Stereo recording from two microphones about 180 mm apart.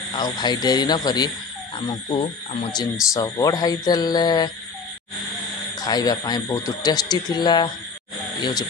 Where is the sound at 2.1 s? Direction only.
35° left (ahead or behind).